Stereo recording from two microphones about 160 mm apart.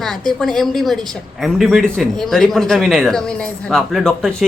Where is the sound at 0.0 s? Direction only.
5° left (ahead or behind).